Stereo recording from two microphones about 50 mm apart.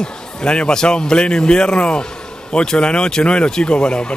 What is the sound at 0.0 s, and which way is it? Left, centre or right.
A man's voice, centre.